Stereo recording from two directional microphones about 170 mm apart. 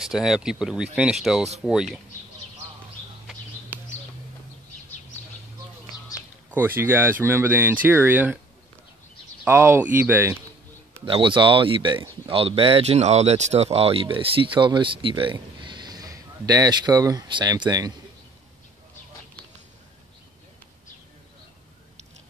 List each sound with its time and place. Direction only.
0.0 s speech: 5° right (ahead or behind)
6.5 s speech: 10° right (ahead or behind)
9.4 s speech: 10° right (ahead or behind)
11.1 s speech: 30° right (ahead or behind)